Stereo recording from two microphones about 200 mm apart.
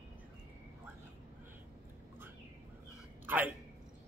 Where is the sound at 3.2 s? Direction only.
10° right (ahead or behind).